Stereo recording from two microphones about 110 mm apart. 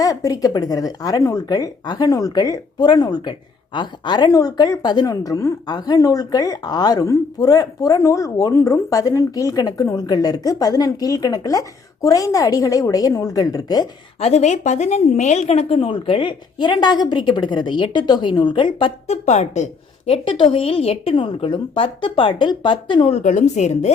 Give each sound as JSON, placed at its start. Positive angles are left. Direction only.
{"t": 0.0, "sound": "a woman's voice", "side_deg": 30}
{"t": 14.2, "sound": "a woman's voice", "side_deg": 70}
{"t": 15.8, "sound": "a woman's voice", "side_deg": 50}
{"t": 19.0, "sound": "a woman's voice", "side_deg": 80}
{"t": 20.1, "sound": "a woman's voice", "side_deg": 50}
{"t": 23.1, "sound": "a woman's voice", "side_deg": 90}